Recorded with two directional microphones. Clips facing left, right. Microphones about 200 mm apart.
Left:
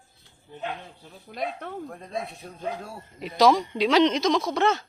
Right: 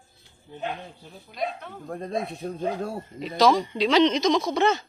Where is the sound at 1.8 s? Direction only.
40° right (ahead or behind).